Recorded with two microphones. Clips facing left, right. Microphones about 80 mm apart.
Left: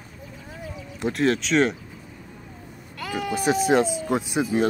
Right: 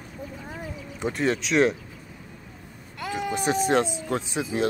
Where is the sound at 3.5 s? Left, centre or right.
Centre.